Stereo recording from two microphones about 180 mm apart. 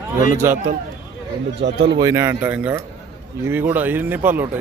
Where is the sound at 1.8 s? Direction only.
25° right (ahead or behind).